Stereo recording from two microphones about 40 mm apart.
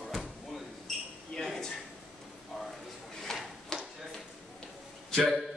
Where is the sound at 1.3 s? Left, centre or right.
Centre.